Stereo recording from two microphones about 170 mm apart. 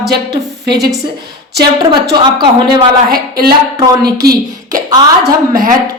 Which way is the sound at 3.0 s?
60° right (ahead or behind).